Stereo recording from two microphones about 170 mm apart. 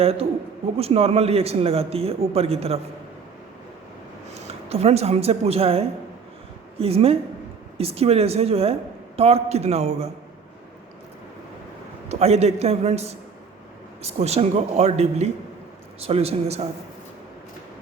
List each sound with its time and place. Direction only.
0.0 s a man's voice: 35° right (ahead or behind)
4.4 s a man's voice: 35° right (ahead or behind)
12.0 s a man's voice: 40° right (ahead or behind)